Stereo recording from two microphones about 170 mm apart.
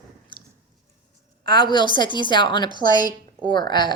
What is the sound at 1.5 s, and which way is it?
Speech, 25° left (ahead or behind).